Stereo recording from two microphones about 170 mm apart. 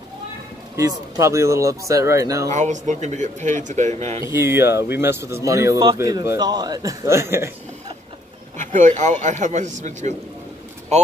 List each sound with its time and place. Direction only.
0.7 s speech: 20° right (ahead or behind)
2.5 s speech: 45° right (ahead or behind)
4.3 s speech: 15° right (ahead or behind)
8.5 s speech: 45° right (ahead or behind)